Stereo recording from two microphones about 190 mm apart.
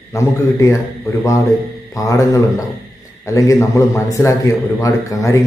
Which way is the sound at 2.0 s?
15° left (ahead or behind).